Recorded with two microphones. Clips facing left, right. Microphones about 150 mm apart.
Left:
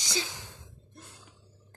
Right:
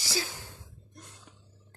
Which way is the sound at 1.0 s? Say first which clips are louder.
Even; 30° left (ahead or behind).